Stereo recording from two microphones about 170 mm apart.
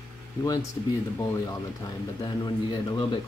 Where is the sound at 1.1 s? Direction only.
20° left (ahead or behind).